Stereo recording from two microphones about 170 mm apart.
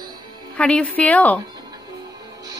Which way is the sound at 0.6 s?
5° left (ahead or behind).